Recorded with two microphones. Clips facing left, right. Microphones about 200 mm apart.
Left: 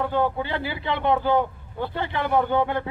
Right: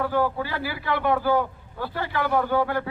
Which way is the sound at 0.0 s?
25° left (ahead or behind).